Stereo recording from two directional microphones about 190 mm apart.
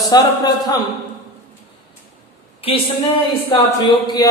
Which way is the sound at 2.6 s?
30° left (ahead or behind).